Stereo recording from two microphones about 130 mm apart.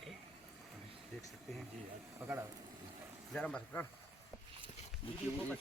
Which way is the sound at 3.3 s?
5° left (ahead or behind).